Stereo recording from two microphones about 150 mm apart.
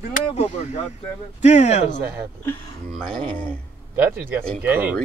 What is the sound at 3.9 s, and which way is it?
A man's voice, 15° right (ahead or behind).